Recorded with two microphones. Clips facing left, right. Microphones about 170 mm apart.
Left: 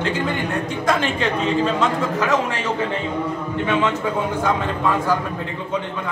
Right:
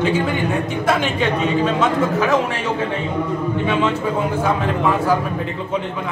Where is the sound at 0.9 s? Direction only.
5° right (ahead or behind).